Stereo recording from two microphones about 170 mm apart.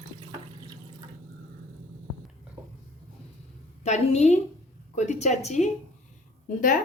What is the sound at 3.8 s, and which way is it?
A woman's voice, 40° left (ahead or behind).